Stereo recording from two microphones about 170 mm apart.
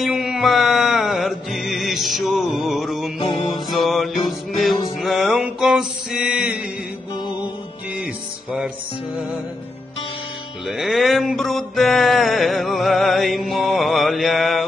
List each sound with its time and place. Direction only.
0.0 s music: centre (ahead or behind)
3.2 s music: 25° left (ahead or behind)
3.7 s music: centre (ahead or behind)
5.0 s mantra: centre (ahead or behind)
10.7 s a sound: centre (ahead or behind)